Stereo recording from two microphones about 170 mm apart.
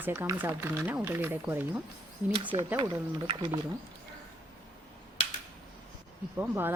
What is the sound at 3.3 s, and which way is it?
Speech, 30° right (ahead or behind).